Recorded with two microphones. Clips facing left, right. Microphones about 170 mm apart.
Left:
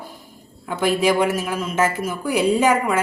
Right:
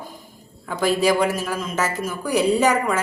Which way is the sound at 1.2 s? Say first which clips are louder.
Left 1 dB; 10° left (ahead or behind).